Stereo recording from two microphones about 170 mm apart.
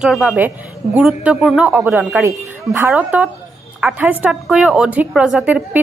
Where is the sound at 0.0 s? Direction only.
5° right (ahead or behind).